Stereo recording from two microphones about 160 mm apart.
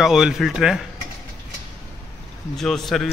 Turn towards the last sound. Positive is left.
turn(degrees=0)  # may be behind; listen again after turning